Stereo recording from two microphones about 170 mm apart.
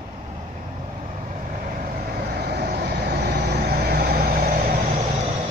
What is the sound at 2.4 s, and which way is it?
Vehicle, 70° right (ahead or behind).